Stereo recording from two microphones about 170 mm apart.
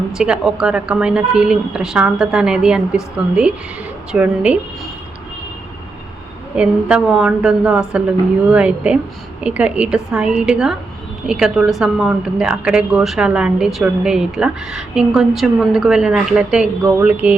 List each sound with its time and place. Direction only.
0.1 s a woman's voice: 5° right (ahead or behind)
6.6 s a woman's voice: 5° right (ahead or behind)